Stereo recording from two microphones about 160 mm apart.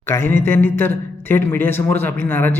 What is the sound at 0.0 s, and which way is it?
A man's voice, 15° left (ahead or behind).